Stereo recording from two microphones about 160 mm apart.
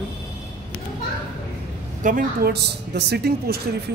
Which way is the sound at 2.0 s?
65° right (ahead or behind).